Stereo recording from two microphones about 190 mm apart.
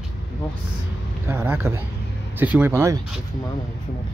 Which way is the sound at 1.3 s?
15° right (ahead or behind).